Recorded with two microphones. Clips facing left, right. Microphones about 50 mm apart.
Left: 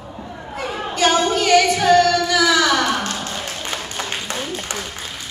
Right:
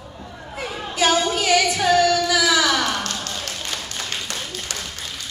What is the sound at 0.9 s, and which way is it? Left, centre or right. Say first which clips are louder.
Singing: left 2 dB; centre.